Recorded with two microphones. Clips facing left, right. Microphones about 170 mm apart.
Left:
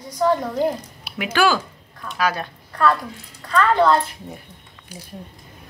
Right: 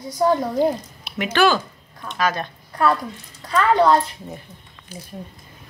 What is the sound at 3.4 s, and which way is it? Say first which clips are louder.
Speech: even; 15° right (ahead or behind).